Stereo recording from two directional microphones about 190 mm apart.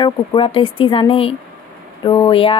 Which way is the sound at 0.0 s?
25° left (ahead or behind).